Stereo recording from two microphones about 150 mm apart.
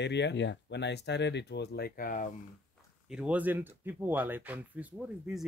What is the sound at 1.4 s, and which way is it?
Speech, 90° left.